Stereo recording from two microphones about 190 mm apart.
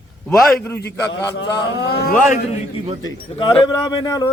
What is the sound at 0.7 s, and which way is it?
A man's voice, 70° left (ahead or behind).